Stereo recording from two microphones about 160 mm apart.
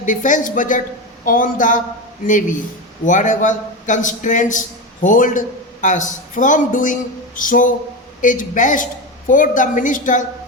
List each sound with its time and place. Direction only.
0.0 s a man's voice: 55° left (ahead or behind)